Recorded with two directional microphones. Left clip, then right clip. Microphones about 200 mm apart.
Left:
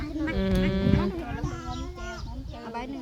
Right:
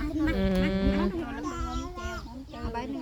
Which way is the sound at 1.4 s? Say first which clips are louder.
Right 2 dB; 60° right (ahead or behind).